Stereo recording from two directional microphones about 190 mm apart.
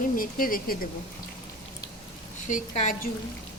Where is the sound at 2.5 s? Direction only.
40° left (ahead or behind).